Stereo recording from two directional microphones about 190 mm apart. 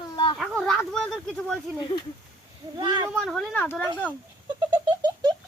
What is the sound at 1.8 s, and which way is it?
Speech, 25° left (ahead or behind).